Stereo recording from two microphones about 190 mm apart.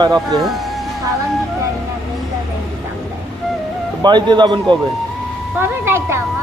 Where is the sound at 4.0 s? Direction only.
25° right (ahead or behind).